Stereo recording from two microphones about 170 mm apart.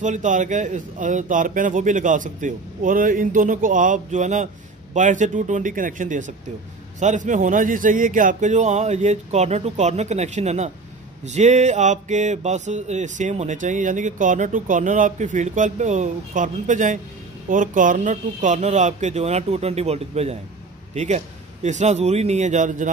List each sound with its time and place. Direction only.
0.0 s a man's voice: 45° right (ahead or behind)